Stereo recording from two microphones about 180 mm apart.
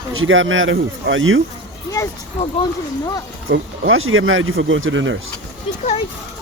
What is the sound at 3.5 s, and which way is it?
Speech, 90° right.